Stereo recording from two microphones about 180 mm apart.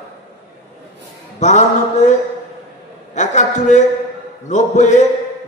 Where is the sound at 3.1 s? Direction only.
40° left (ahead or behind).